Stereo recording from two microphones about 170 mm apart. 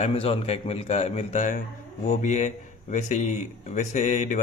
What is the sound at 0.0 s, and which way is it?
A man's voice, 35° left (ahead or behind).